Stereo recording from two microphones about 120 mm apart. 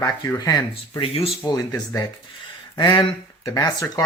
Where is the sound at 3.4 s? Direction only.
25° left (ahead or behind).